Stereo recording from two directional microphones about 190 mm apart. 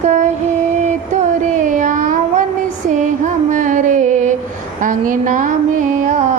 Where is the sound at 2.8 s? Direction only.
40° right (ahead or behind).